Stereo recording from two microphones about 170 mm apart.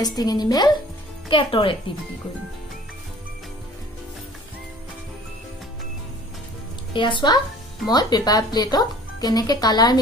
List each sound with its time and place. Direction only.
0.0 s speech: 25° left (ahead or behind)
6.9 s speech: 30° left (ahead or behind)